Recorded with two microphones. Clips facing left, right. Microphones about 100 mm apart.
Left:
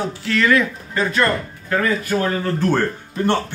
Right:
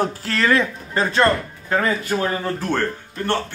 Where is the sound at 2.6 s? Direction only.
Centre (ahead or behind).